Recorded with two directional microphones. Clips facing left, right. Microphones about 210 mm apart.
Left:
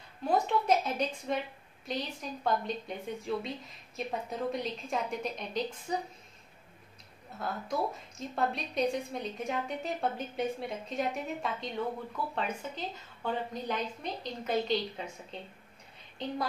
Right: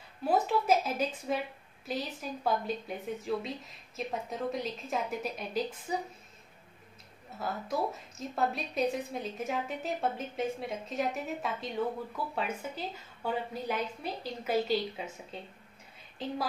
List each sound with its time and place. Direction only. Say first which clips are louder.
0.2 s a woman's voice: right 1 dB; 5° right (ahead or behind)
7.3 s a woman's voice: even; centre (ahead or behind)